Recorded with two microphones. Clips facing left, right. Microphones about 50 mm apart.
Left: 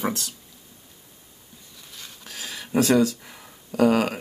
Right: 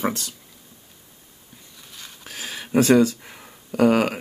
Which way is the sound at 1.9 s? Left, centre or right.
Centre.